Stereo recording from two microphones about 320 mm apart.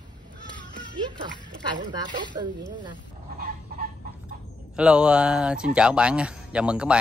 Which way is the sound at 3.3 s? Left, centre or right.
Right.